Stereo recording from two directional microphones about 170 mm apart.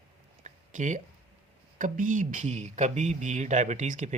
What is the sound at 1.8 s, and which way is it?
Speech, 50° right (ahead or behind).